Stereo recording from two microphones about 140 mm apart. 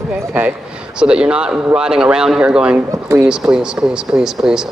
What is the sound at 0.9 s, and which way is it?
Speech, 5° right (ahead or behind).